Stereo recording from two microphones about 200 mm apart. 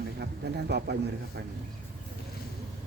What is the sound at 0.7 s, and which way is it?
Mantra, 55° right (ahead or behind).